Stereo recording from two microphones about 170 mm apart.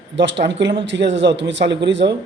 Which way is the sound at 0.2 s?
90° right.